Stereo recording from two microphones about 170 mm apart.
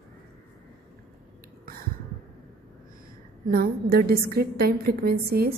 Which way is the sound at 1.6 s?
60° right (ahead or behind).